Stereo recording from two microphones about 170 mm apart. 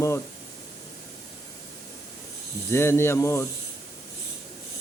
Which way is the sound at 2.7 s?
15° left (ahead or behind).